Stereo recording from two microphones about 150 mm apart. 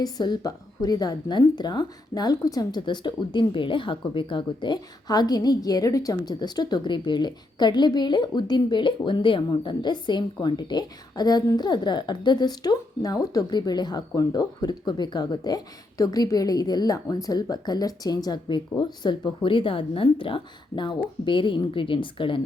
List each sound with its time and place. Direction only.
0.0 s a woman's voice: 30° left (ahead or behind)